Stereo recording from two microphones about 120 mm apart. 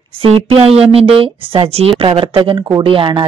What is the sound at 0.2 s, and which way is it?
Speech, 50° right (ahead or behind).